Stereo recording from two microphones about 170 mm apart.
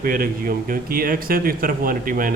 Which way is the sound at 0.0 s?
60° right (ahead or behind).